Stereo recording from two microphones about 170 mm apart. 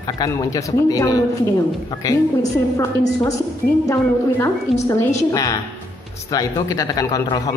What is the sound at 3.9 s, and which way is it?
A woman's voice, 15° left (ahead or behind).